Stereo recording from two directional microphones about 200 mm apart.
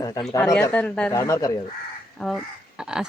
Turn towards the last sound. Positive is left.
turn(degrees=-5)  # may be behind; listen again after turning